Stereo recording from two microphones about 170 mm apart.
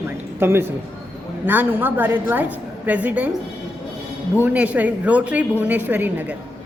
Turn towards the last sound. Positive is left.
turn(degrees=-10)  # may be behind; listen again after turning